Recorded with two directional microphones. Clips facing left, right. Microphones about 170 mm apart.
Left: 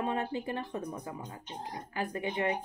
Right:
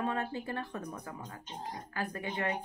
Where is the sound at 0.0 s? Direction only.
20° left (ahead or behind).